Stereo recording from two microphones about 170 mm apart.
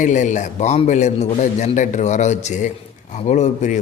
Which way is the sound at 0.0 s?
45° left (ahead or behind).